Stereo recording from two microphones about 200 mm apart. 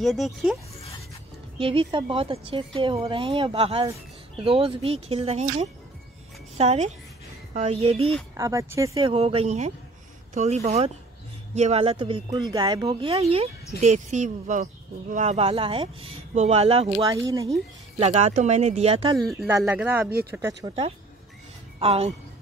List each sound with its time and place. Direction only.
0.0 s speech: centre (ahead or behind)
1.6 s a woman's voice: 25° right (ahead or behind)
8.4 s speech: 15° right (ahead or behind)
9.1 s a woman's voice: 30° right (ahead or behind)
13.7 s speech: 35° right (ahead or behind)
17.0 s speech: 15° right (ahead or behind)
17.9 s speech: 35° right (ahead or behind)
19.3 s speech: 15° right (ahead or behind)
20.1 s speech: 50° right (ahead or behind)
21.7 s a woman's voice: 30° right (ahead or behind)